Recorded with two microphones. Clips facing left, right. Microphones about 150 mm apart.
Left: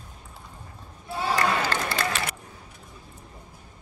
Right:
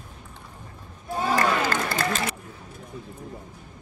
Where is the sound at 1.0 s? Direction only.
45° right (ahead or behind).